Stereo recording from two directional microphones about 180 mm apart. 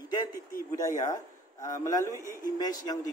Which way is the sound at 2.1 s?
15° right (ahead or behind).